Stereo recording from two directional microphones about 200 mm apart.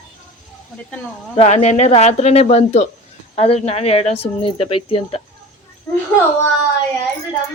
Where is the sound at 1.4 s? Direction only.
35° left (ahead or behind).